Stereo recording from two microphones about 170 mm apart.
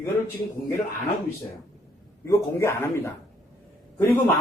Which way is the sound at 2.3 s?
15° left (ahead or behind).